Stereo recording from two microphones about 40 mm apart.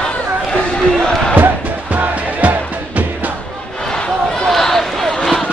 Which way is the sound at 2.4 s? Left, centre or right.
Right.